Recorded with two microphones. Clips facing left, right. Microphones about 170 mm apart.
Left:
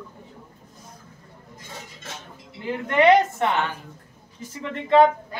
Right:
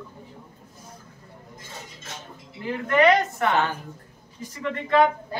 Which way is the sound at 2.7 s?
25° left (ahead or behind).